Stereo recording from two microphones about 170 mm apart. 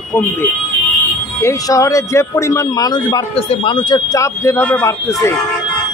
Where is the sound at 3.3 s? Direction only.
30° left (ahead or behind); by 5.1 s 15° left (ahead or behind).